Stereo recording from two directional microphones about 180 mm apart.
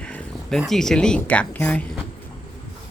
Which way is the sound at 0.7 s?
5° left (ahead or behind).